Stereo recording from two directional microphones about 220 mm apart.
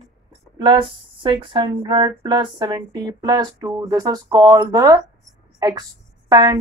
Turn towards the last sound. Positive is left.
turn(degrees=-20)  # may be behind; listen again after turning